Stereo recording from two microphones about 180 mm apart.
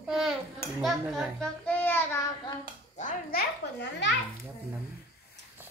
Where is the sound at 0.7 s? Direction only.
Centre (ahead or behind).